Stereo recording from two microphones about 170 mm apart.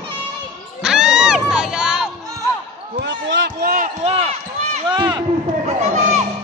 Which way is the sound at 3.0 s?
90° right.